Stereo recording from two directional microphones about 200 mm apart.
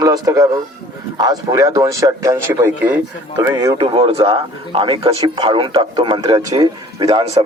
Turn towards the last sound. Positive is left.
turn(degrees=-20)  # may be behind; listen again after turning